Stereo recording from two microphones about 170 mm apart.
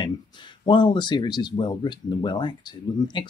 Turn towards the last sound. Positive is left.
turn(degrees=30)  # may be behind; listen again after turning